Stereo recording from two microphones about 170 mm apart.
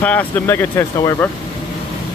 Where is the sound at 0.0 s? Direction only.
10° left (ahead or behind).